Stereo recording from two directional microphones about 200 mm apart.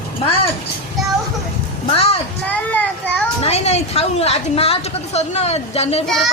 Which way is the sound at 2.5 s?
10° left (ahead or behind).